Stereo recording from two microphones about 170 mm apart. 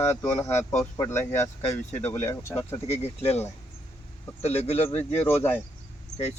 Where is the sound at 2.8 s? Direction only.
40° left (ahead or behind).